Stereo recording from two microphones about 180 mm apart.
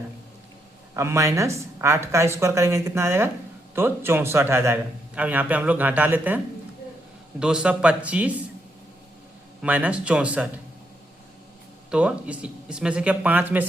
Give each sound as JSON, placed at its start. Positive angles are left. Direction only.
{"t": 0.9, "sound": "a man's voice", "side_deg": -15}
{"t": 9.6, "sound": "a man's voice", "side_deg": -10}
{"t": 11.9, "sound": "a man's voice", "side_deg": -5}